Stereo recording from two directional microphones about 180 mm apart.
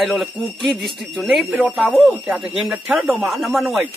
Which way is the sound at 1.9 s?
10° left (ahead or behind).